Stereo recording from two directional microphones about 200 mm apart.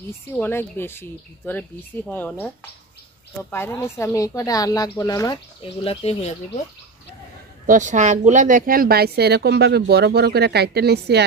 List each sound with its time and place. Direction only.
0.3 s a woman's voice: 10° left (ahead or behind)
5.9 s speech: 30° left (ahead or behind)
7.6 s a woman's voice: 40° right (ahead or behind); by 11.2 s 55° right (ahead or behind)